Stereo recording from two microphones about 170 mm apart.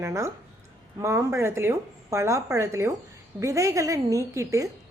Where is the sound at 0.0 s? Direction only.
15° right (ahead or behind).